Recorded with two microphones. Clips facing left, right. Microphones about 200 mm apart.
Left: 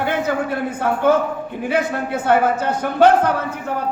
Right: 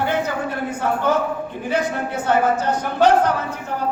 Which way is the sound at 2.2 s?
55° left (ahead or behind).